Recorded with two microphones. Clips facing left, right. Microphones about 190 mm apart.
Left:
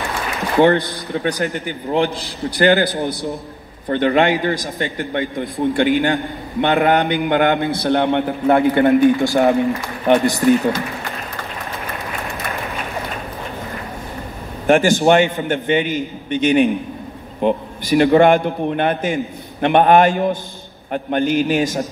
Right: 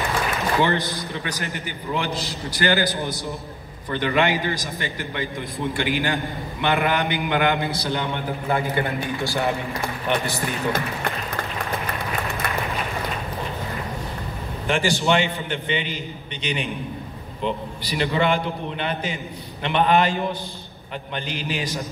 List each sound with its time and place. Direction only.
0.6 s a man's voice: 55° left (ahead or behind)
14.7 s a man's voice: 50° left (ahead or behind)